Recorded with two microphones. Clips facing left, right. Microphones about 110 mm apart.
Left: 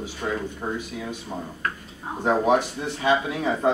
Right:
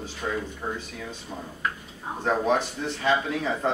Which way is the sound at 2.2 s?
15° left (ahead or behind).